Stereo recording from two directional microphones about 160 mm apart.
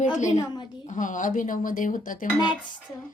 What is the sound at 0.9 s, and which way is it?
Speech, 55° left (ahead or behind).